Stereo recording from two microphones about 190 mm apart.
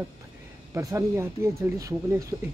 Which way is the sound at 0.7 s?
15° right (ahead or behind).